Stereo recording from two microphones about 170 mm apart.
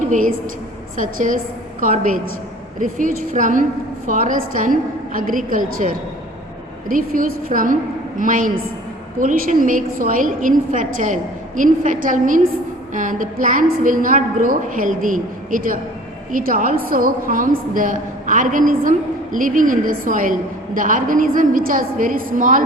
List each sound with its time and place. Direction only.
0.1 s a woman's voice: 50° right (ahead or behind)